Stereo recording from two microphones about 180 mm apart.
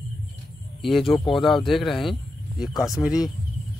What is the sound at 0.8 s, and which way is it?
Speech, centre (ahead or behind).